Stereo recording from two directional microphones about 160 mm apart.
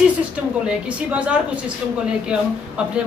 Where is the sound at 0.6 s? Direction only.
10° right (ahead or behind).